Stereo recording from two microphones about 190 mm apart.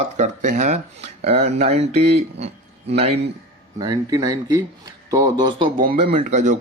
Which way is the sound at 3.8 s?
20° right (ahead or behind).